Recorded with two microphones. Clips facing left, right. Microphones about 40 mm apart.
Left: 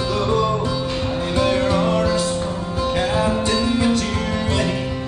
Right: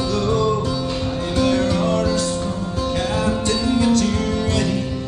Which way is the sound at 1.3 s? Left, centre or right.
Centre.